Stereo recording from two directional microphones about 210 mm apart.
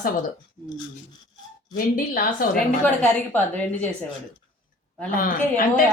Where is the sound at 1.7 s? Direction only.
40° left (ahead or behind).